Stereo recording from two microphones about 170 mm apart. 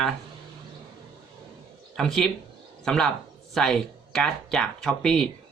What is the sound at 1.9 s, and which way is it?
Speech, centre (ahead or behind).